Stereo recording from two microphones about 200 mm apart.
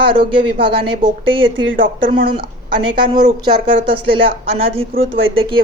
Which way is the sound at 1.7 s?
45° right (ahead or behind).